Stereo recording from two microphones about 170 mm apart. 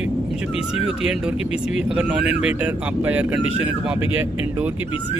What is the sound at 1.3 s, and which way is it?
Speech, 35° left (ahead or behind).